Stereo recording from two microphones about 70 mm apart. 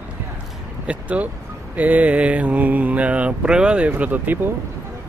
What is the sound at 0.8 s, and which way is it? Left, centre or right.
Speech, centre.